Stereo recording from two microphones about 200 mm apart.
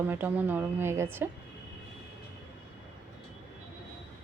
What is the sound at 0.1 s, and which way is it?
A woman's voice, 10° right (ahead or behind).